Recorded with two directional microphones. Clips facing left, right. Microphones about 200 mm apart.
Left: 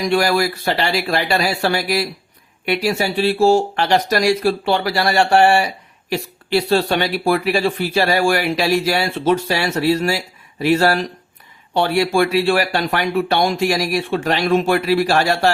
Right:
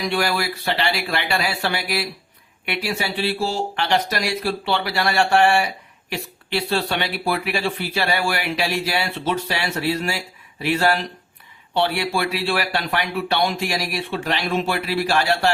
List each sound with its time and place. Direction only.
0.0 s speech: 45° left (ahead or behind)